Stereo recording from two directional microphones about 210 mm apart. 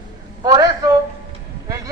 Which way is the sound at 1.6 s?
15° right (ahead or behind).